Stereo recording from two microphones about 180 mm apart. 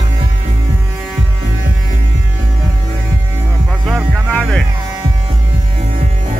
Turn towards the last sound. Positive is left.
turn(degrees=5)  # may be behind; listen again after turning